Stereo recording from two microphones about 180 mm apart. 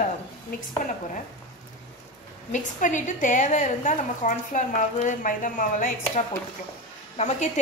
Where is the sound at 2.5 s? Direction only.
45° left (ahead or behind).